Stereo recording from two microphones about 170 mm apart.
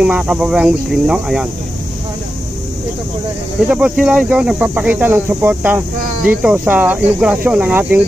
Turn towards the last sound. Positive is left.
turn(degrees=-10)  # may be behind; listen again after turning